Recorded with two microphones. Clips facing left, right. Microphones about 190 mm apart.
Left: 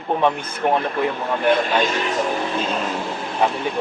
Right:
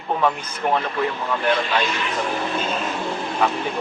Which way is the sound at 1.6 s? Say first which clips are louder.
Left 3 dB; 45° left (ahead or behind).